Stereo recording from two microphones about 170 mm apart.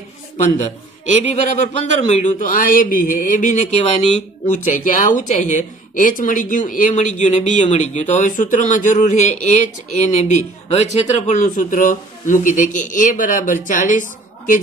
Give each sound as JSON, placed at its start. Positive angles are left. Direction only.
{"t": 0.4, "sound": "a man's voice", "side_deg": 45}